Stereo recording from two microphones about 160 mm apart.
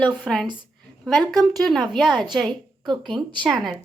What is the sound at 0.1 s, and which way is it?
A woman's voice, centre (ahead or behind).